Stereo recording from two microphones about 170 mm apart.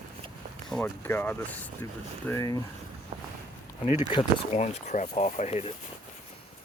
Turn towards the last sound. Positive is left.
turn(degrees=40)  # may be behind; listen again after turning